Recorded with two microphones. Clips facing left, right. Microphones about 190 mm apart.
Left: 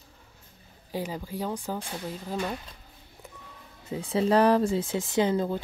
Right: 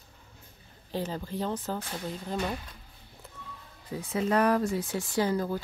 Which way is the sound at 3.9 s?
30° left (ahead or behind).